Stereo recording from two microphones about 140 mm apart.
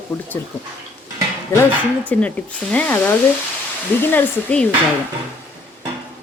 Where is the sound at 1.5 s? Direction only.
20° left (ahead or behind).